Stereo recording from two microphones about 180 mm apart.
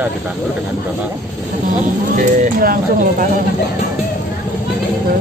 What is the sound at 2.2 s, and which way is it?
Speech, 45° right (ahead or behind).